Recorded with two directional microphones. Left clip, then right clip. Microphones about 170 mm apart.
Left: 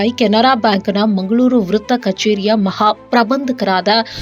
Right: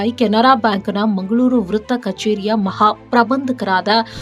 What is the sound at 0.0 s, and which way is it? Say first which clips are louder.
Speech: left 2 dB; 10° left (ahead or behind).